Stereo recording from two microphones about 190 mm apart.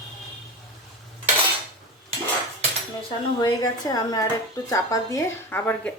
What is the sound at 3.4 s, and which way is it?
A woman's voice, 20° left (ahead or behind).